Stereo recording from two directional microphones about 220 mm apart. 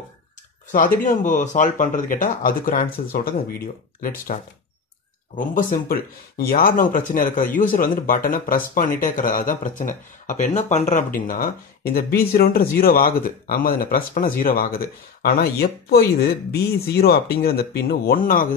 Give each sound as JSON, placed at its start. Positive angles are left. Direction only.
{"t": 0.7, "sound": "speech", "side_deg": 35}